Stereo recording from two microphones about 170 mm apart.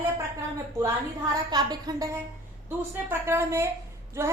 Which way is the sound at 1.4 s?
25° right (ahead or behind).